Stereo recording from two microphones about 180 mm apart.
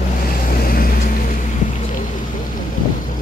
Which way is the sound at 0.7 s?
55° left (ahead or behind).